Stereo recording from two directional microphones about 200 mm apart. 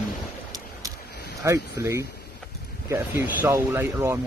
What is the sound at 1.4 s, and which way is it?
Speech, 15° right (ahead or behind).